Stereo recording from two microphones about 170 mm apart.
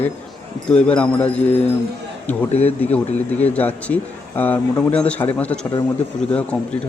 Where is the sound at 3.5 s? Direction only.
10° left (ahead or behind).